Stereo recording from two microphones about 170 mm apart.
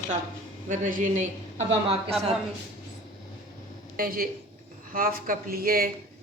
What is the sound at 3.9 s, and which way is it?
Speech, 60° right (ahead or behind).